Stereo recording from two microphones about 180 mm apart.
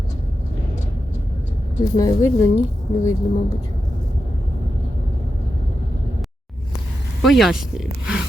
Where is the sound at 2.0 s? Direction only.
20° left (ahead or behind).